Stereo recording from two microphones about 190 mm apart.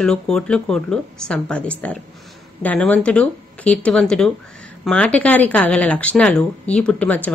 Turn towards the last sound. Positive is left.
turn(degrees=10)  # may be behind; listen again after turning